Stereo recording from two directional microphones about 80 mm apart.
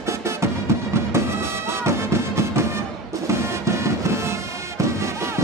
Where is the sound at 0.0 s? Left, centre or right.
Right.